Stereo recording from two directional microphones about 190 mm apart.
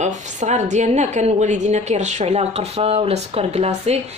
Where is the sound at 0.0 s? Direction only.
40° right (ahead or behind).